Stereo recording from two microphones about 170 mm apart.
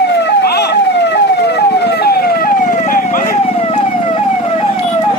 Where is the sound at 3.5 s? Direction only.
35° left (ahead or behind).